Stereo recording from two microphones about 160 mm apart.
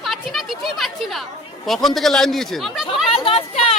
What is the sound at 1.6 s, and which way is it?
Speech, centre (ahead or behind).